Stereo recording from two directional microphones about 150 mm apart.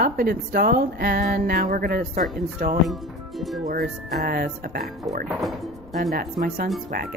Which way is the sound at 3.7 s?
90° right.